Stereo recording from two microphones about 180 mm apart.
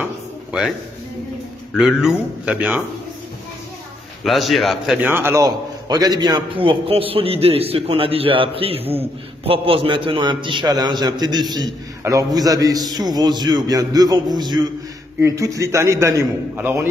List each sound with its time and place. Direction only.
0.0 s a sound: 5° right (ahead or behind)
1.8 s speech: 5° right (ahead or behind)
4.2 s a man's voice: centre (ahead or behind); by 16.8 s 15° right (ahead or behind)